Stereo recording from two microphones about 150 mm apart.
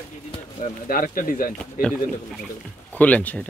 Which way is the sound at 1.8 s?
Centre (ahead or behind).